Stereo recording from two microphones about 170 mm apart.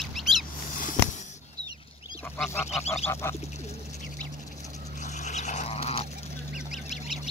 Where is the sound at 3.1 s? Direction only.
15° left (ahead or behind).